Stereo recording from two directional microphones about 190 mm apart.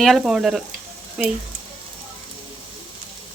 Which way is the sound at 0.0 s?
Centre (ahead or behind).